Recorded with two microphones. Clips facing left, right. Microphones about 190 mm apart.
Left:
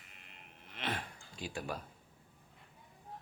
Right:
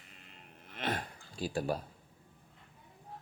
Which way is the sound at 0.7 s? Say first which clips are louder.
Right 4 dB; 45° right (ahead or behind).